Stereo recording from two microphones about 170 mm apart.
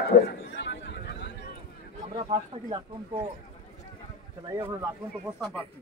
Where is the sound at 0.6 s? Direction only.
90° left.